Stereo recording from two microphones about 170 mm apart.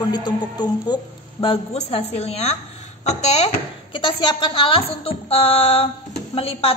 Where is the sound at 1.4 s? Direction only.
35° left (ahead or behind).